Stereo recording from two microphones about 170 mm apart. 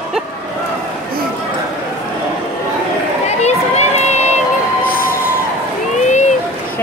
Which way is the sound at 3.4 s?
40° left (ahead or behind).